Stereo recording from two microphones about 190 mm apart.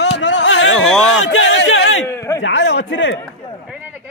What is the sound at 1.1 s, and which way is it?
Speech, 85° left.